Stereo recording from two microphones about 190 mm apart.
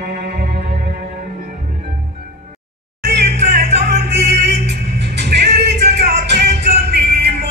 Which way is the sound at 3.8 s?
60° right (ahead or behind).